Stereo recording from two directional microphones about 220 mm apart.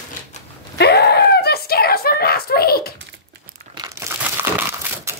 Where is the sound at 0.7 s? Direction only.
50° left (ahead or behind).